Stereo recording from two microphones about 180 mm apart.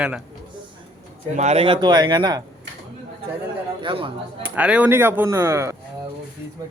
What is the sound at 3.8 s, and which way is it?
Speech, 30° right (ahead or behind).